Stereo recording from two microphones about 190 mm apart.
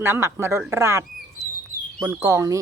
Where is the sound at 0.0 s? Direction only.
15° right (ahead or behind).